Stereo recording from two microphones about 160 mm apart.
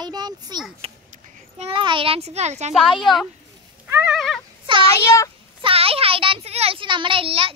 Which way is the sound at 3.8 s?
10° right (ahead or behind).